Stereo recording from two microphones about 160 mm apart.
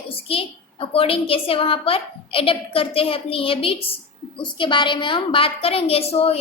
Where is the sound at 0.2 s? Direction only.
35° left (ahead or behind).